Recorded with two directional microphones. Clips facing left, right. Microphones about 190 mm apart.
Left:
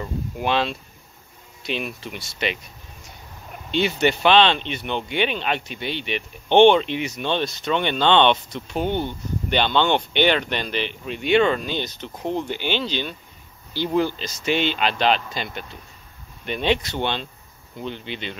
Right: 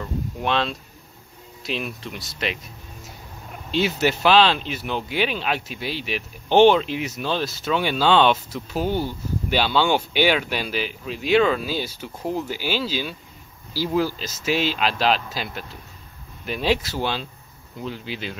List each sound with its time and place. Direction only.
0.0 s speech: 5° left (ahead or behind)